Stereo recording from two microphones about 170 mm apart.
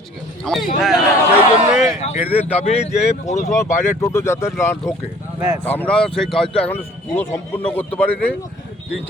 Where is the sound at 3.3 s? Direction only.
15° left (ahead or behind).